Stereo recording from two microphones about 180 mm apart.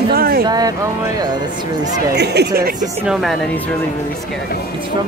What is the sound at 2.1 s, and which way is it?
Speech, 65° right (ahead or behind).